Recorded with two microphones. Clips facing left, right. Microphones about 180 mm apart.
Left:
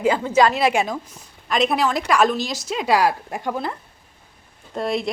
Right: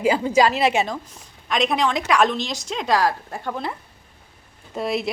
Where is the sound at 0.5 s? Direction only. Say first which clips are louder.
Left 1 dB; centre (ahead or behind).